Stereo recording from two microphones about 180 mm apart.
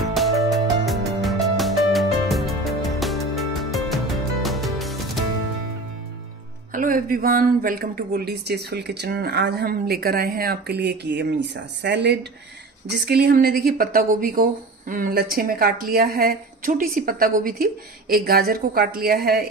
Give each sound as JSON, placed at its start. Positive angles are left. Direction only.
{"t": 0.0, "sound": "music", "side_deg": 0}
{"t": 6.7, "sound": "speech", "side_deg": -50}